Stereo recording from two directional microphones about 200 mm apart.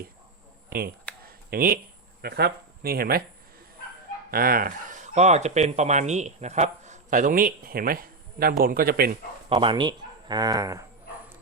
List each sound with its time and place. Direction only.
0.7 s speech: 50° right (ahead or behind)
1.2 s a sound: 45° right (ahead or behind)
2.2 s speech: 50° right (ahead or behind)
4.3 s speech: 45° right (ahead or behind)
9.5 s speech: 25° right (ahead or behind)